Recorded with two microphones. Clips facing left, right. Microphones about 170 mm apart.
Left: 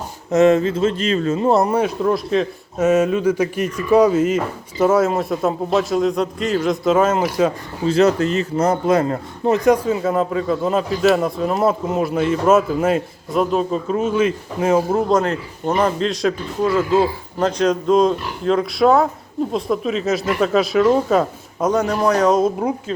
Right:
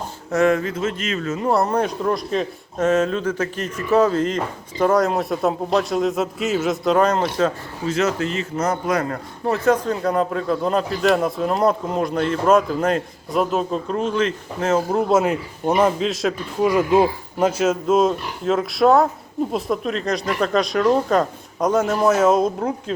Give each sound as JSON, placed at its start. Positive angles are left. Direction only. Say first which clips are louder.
{"t": 0.3, "sound": "speech", "louder": "left 5 dB", "side_deg": 20}
{"t": 1.7, "sound": "speech", "louder": "left 3 dB", "side_deg": 5}
{"t": 7.9, "sound": "speech", "louder": "left 6 dB", "side_deg": 35}
{"t": 14.9, "sound": "speech", "louder": "even", "side_deg": -10}
{"t": 16.6, "sound": "speech", "louder": "even", "side_deg": -15}
{"t": 17.6, "sound": "speech", "louder": "left 4 dB", "side_deg": -5}